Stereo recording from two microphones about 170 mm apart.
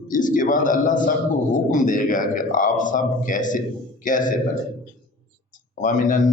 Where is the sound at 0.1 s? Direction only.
50° left (ahead or behind).